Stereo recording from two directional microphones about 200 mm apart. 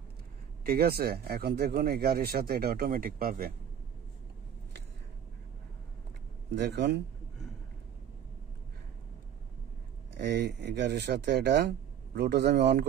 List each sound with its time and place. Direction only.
0.7 s speech: 50° right (ahead or behind)
6.5 s speech: 60° right (ahead or behind)
10.1 s speech: 60° right (ahead or behind)